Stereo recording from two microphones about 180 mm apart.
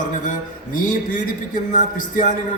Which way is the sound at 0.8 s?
45° left (ahead or behind).